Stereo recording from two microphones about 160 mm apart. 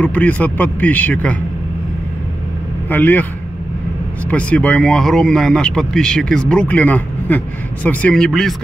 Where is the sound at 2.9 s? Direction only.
10° left (ahead or behind).